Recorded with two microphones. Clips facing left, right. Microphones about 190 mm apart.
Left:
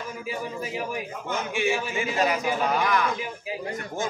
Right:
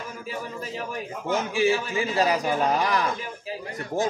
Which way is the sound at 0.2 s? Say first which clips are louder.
Left 2 dB; 10° left (ahead or behind).